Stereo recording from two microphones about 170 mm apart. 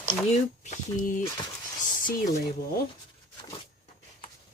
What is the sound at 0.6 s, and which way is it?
Speech, 45° left (ahead or behind).